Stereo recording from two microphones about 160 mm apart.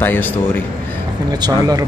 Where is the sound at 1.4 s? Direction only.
25° right (ahead or behind).